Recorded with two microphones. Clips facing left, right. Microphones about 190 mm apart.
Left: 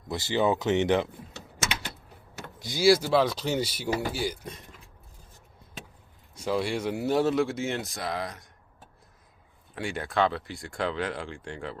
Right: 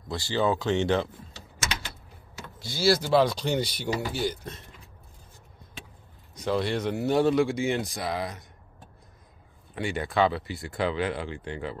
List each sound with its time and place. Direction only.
0.1 s speech: 20° left (ahead or behind)
2.6 s speech: 15° left (ahead or behind)
6.3 s speech: 10° left (ahead or behind)
9.8 s speech: centre (ahead or behind)